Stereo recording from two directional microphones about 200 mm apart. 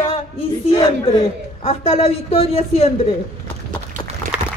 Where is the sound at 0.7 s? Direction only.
25° left (ahead or behind).